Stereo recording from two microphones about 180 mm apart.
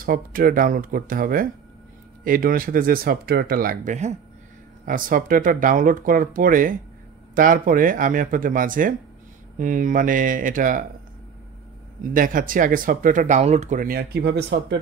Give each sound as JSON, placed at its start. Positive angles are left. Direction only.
{"t": 0.0, "sound": "speech", "side_deg": -50}
{"t": 12.0, "sound": "speech", "side_deg": -50}